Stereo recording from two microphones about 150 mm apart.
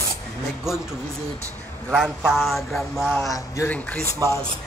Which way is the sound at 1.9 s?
Centre (ahead or behind).